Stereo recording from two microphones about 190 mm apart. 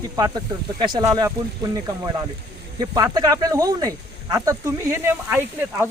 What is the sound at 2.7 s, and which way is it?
Speech, 20° right (ahead or behind).